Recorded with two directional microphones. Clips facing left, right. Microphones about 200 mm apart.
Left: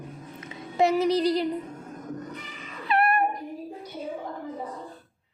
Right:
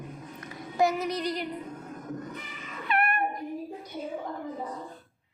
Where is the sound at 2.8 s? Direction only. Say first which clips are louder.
Left 4 dB; 35° left (ahead or behind).